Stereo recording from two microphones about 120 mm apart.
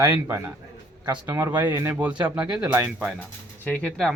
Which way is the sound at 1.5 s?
35° right (ahead or behind).